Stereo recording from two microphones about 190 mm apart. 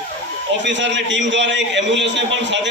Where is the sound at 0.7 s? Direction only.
70° right (ahead or behind).